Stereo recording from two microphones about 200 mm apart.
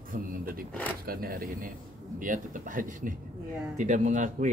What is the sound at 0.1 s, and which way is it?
Speech, 45° right (ahead or behind).